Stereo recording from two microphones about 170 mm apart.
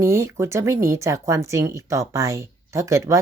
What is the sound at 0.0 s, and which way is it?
Speech, 15° right (ahead or behind).